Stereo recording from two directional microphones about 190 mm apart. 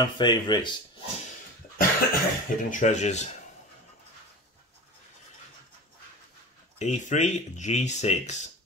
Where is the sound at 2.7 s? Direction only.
40° left (ahead or behind).